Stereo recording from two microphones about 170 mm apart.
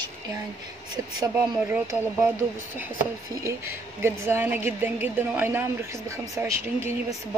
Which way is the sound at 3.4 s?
15° right (ahead or behind).